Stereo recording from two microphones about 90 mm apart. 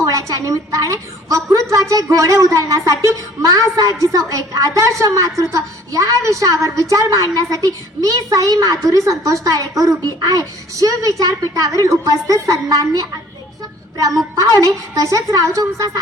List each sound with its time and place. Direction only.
0.4 s a woman's voice: 40° right (ahead or behind)